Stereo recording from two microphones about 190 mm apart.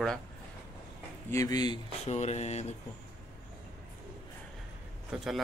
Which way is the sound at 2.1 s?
35° left (ahead or behind).